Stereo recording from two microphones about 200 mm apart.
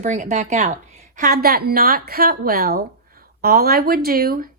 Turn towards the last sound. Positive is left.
turn(degrees=-50)  # may be behind; listen again after turning